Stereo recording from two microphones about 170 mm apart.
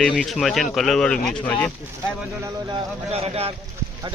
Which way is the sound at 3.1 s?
35° right (ahead or behind).